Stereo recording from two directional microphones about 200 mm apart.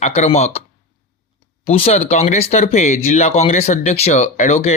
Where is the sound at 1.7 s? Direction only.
30° left (ahead or behind).